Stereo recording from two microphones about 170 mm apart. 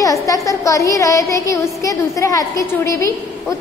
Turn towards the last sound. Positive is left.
turn(degrees=20)  # may be behind; listen again after turning